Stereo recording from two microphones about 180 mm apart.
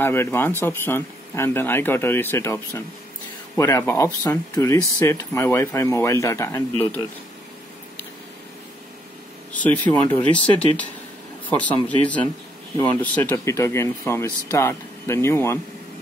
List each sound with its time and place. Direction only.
0.0 s speech: 15° left (ahead or behind)
9.5 s speech: 10° left (ahead or behind)